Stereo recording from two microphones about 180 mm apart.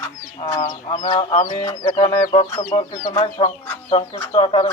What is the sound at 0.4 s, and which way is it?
Speech, 20° left (ahead or behind).